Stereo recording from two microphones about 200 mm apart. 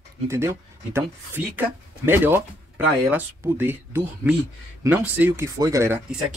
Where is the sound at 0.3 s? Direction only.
10° right (ahead or behind).